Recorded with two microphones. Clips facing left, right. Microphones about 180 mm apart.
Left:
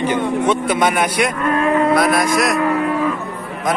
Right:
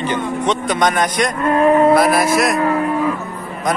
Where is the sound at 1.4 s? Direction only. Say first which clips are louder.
Right 5 dB; 25° right (ahead or behind).